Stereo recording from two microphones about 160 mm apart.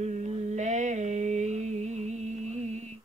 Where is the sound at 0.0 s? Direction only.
45° right (ahead or behind).